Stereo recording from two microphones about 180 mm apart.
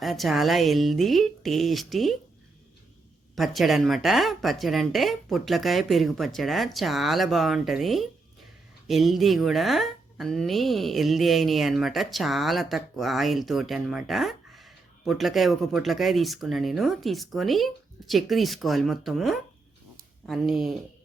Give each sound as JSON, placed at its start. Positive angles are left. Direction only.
{"t": 0.0, "sound": "speech", "side_deg": 0}
{"t": 3.3, "sound": "speech", "side_deg": 0}